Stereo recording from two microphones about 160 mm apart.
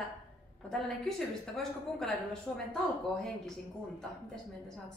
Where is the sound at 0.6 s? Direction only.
Centre (ahead or behind).